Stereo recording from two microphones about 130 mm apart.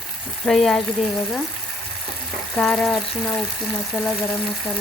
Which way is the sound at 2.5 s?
5° left (ahead or behind).